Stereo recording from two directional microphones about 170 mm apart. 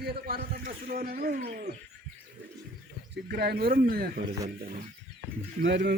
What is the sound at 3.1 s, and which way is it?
Speech, 70° right (ahead or behind).